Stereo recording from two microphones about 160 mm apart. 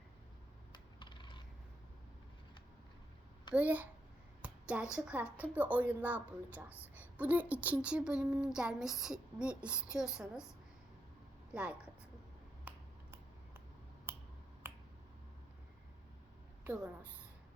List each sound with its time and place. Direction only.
0.7 s a sound: 30° left (ahead or behind)
3.5 s a woman's voice: 10° right (ahead or behind)
11.5 s a woman's voice: 5° right (ahead or behind)
12.7 s finger snapping: 10° right (ahead or behind)
14.1 s finger snapping: 15° right (ahead or behind)
16.6 s a woman's voice: 10° right (ahead or behind)